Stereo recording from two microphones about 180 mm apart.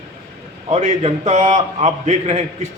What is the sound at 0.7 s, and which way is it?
A man's voice, 40° right (ahead or behind).